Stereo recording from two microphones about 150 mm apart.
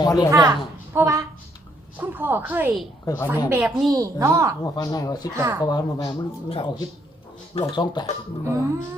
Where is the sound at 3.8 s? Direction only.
20° right (ahead or behind).